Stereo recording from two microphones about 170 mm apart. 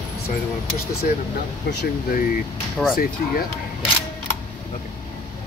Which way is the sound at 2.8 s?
5° right (ahead or behind).